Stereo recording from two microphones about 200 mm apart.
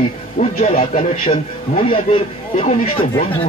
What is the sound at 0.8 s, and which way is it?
Speech, 45° left (ahead or behind).